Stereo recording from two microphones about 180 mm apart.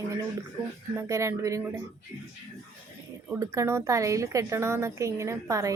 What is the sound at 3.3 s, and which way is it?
A woman's voice, 15° right (ahead or behind).